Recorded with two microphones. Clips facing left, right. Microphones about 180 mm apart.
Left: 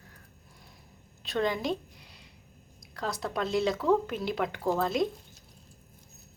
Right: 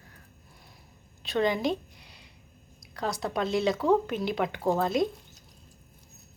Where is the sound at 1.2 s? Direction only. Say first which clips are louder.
Right 3 dB; centre (ahead or behind).